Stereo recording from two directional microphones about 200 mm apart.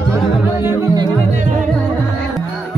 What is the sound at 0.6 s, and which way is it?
Music, 15° right (ahead or behind).